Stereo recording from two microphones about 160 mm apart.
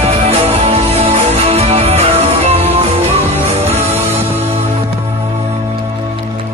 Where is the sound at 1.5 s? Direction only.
40° right (ahead or behind).